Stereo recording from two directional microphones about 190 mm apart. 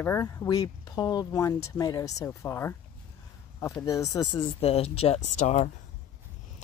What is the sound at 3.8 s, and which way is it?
Speech, 15° left (ahead or behind).